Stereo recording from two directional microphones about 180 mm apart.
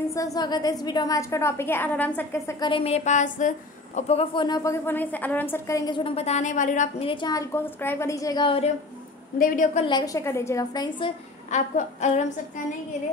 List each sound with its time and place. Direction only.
0.1 s a woman's voice: 20° left (ahead or behind)
2.7 s speech: 35° left (ahead or behind)
4.8 s a woman's voice: 10° left (ahead or behind); by 7.1 s 45° left (ahead or behind)
7.1 s a woman's voice: 25° left (ahead or behind)
9.4 s a woman's voice: 45° left (ahead or behind)
9.8 s a woman's voice: 20° left (ahead or behind)
11.5 s speech: 40° left (ahead or behind)